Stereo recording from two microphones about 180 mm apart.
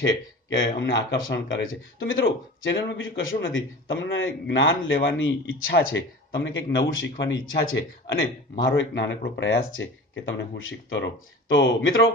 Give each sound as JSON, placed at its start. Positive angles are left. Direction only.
{"t": 0.6, "sound": "speech", "side_deg": 85}